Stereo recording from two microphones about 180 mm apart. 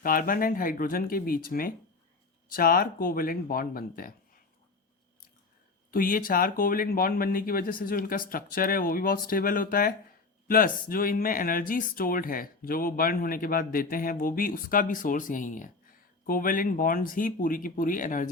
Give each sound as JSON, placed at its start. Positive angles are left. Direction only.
{"t": 0.0, "sound": "speech", "side_deg": 50}
{"t": 5.9, "sound": "speech", "side_deg": 50}